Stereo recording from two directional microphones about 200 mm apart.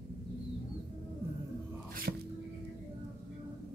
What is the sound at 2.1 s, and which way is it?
Music, 55° right (ahead or behind).